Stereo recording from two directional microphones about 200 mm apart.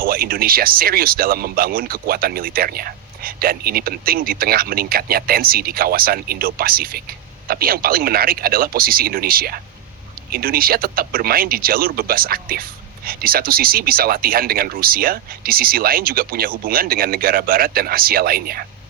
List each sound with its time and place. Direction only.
0.0 s speech: 45° right (ahead or behind)